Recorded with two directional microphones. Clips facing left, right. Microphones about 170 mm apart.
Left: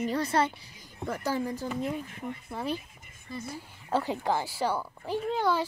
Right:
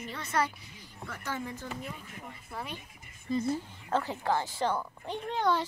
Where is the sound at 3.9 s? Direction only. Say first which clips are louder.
Left 2 dB; 15° left (ahead or behind).